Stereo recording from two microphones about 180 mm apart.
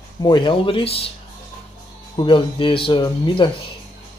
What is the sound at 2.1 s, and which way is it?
Speech, 30° left (ahead or behind).